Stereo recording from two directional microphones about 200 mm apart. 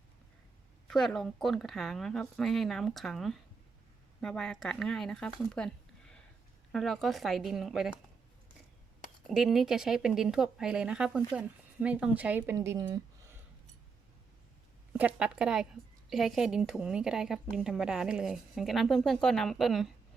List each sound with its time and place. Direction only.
0.9 s a woman's voice: 5° left (ahead or behind)
9.3 s a woman's voice: centre (ahead or behind)
14.9 s a woman's voice: 5° right (ahead or behind)